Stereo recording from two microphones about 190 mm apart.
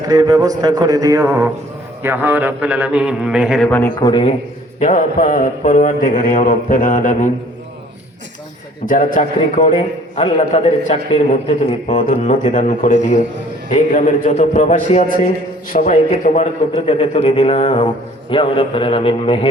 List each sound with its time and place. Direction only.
0.1 s a man's voice: 20° right (ahead or behind); by 3.9 s 10° left (ahead or behind)
4.0 s a man's voice: 25° left (ahead or behind)
4.8 s a man's voice: 40° left (ahead or behind)
8.9 s a man's voice: 45° left (ahead or behind); by 19.5 s 30° left (ahead or behind)